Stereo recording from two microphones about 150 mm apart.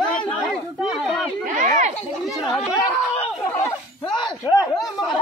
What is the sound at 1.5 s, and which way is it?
Speech, 60° right (ahead or behind).